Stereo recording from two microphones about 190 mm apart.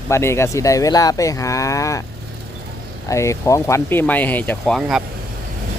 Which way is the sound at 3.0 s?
15° left (ahead or behind).